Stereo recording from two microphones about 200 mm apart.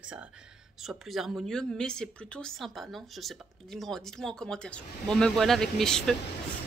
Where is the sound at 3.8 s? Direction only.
Centre (ahead or behind).